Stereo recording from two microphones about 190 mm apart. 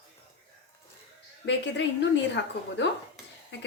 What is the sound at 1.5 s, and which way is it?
A woman's voice, 65° left (ahead or behind).